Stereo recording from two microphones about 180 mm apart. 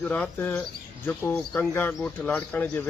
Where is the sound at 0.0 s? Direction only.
5° left (ahead or behind).